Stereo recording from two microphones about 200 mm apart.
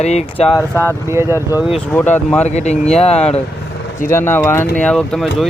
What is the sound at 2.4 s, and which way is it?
Speech, 35° left (ahead or behind).